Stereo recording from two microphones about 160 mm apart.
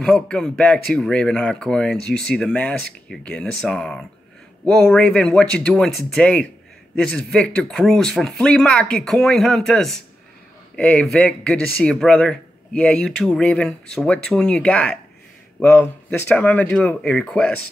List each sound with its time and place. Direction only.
0.0 s a man's voice: 5° left (ahead or behind)